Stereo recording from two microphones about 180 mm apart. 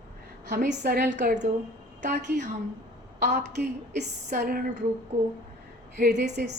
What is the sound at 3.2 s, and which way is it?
Speech, 65° right (ahead or behind).